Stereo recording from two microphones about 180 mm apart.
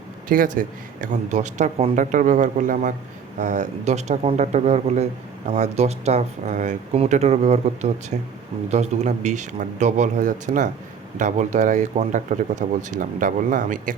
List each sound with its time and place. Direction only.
0.3 s speech: 50° right (ahead or behind)